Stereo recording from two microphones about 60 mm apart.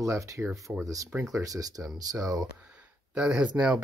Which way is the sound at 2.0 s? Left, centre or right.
Right.